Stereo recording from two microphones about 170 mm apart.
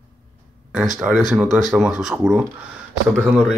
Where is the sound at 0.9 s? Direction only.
Centre (ahead or behind).